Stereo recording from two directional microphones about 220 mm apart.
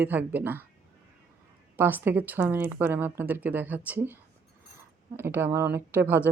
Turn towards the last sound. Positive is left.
turn(degrees=-10)  # may be behind; listen again after turning